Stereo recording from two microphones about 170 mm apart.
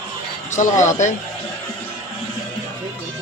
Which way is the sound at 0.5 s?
45° left (ahead or behind).